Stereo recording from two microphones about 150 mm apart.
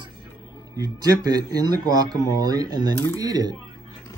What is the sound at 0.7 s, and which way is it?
Speech, 25° right (ahead or behind).